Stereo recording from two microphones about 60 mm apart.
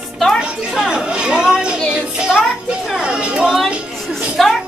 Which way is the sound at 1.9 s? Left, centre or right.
Centre.